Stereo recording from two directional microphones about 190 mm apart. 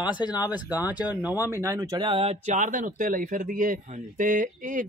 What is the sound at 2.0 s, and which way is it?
Speech, 30° right (ahead or behind).